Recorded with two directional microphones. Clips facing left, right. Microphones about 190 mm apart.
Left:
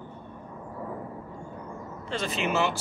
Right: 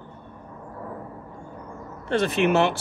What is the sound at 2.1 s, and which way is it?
Speech, 60° right (ahead or behind).